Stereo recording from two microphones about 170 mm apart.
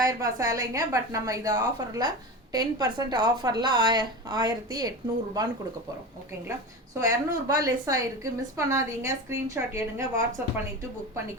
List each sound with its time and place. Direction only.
0.0 s a woman's voice: 20° right (ahead or behind)
7.0 s a woman's voice: 20° right (ahead or behind)